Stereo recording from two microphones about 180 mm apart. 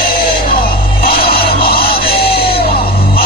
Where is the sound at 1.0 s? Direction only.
55° left (ahead or behind).